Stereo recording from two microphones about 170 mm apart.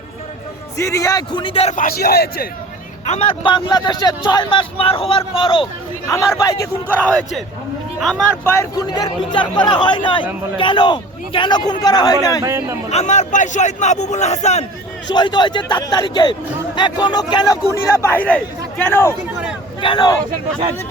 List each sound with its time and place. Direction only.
0.8 s speech: 20° left (ahead or behind); by 1.7 s 35° left (ahead or behind)
1.7 s a man's voice: 55° left (ahead or behind)
3.4 s speech: 25° left (ahead or behind)
6.1 s speech: 20° left (ahead or behind)
7.0 s a man's voice: 5° left (ahead or behind); by 12.4 s 20° left (ahead or behind)
12.4 s speech: 15° right (ahead or behind)
12.9 s a man's voice: 40° left (ahead or behind)
15.1 s speech: 25° left (ahead or behind)
18.0 s speech: 10° left (ahead or behind)
19.8 s speech: 25° left (ahead or behind)